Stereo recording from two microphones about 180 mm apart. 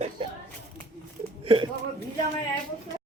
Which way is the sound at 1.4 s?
30° right (ahead or behind).